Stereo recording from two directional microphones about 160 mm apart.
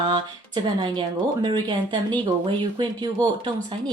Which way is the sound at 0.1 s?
30° right (ahead or behind).